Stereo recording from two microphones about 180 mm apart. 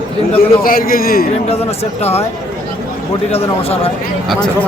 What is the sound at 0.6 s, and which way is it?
Speech, 55° left (ahead or behind).